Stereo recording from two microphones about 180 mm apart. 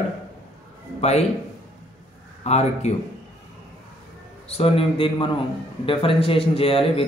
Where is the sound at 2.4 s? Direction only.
35° left (ahead or behind).